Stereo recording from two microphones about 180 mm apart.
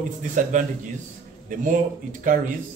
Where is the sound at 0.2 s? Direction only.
45° right (ahead or behind).